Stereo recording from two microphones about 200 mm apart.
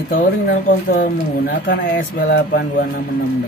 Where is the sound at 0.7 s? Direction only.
45° left (ahead or behind).